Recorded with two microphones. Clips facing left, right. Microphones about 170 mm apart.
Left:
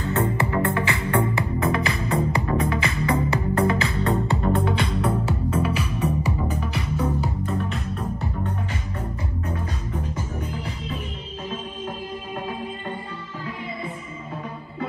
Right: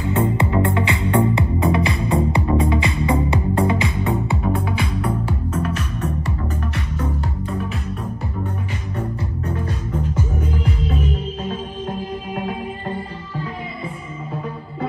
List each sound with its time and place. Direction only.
0.0 s music: 15° right (ahead or behind)
4.3 s music: 5° right (ahead or behind)